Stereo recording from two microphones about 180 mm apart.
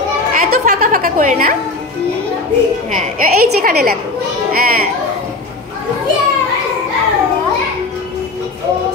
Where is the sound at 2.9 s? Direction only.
50° right (ahead or behind).